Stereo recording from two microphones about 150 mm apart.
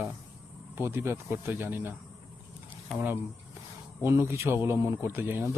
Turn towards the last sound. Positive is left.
turn(degrees=-15)  # may be behind; listen again after turning